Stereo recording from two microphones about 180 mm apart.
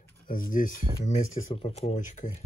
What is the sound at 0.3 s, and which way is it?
Speech, 50° left (ahead or behind).